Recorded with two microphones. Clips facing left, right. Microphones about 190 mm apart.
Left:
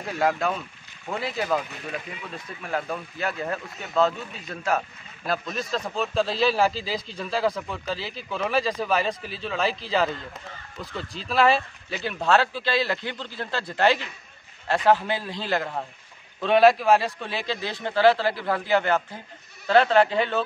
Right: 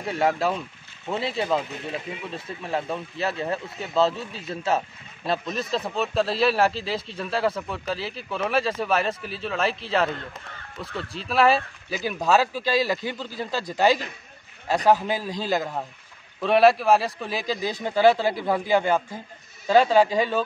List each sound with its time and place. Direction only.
0.2 s speech: centre (ahead or behind)
1.0 s speech: 25° right (ahead or behind)
5.5 s speech: centre (ahead or behind)